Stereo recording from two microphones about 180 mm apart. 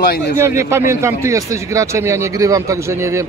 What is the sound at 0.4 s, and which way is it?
Speech, 15° right (ahead or behind).